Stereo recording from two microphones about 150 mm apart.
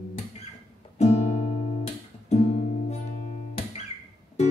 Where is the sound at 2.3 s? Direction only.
45° left (ahead or behind).